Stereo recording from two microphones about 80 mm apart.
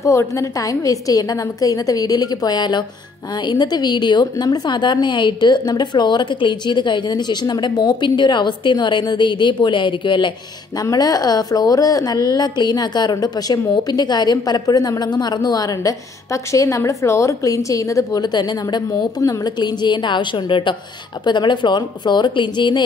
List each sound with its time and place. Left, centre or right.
0.0 s a woman's voice: left
10.8 s speech: left
18.2 s a woman's voice: left
21.2 s a woman's voice: left